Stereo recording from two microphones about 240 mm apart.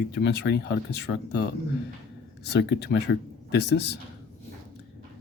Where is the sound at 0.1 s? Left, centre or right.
Left.